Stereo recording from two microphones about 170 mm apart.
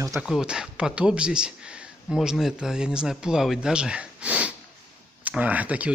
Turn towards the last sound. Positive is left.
turn(degrees=-10)  # may be behind; listen again after turning